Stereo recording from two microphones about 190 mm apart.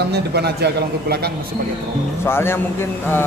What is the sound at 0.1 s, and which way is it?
A man's voice, 60° right (ahead or behind).